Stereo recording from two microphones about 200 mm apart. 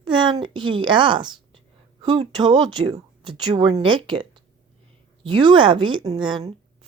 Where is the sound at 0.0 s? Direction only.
25° right (ahead or behind).